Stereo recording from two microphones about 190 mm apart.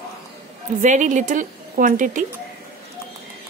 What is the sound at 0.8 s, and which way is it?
A woman's voice, 40° right (ahead or behind).